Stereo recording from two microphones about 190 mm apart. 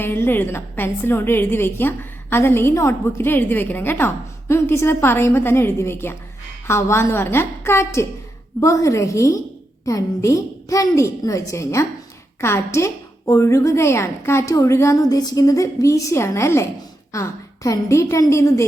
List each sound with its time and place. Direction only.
0.0 s a woman's voice: 10° left (ahead or behind)